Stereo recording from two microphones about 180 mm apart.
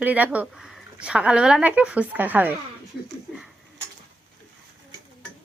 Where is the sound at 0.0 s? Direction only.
10° right (ahead or behind).